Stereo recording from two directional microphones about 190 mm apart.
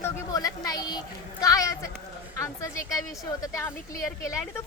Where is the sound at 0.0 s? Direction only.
20° left (ahead or behind).